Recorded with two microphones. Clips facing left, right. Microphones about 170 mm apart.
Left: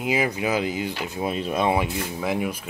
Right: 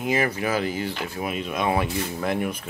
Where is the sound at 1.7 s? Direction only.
10° left (ahead or behind).